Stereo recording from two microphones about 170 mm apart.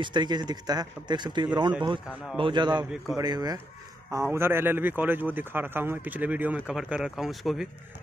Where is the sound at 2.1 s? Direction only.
Centre (ahead or behind).